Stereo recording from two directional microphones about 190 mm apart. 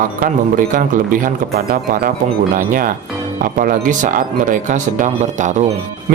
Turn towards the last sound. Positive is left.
turn(degrees=-40)  # may be behind; listen again after turning